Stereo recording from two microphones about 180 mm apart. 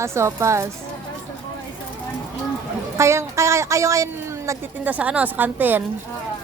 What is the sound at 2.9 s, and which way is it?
Speech, 15° right (ahead or behind).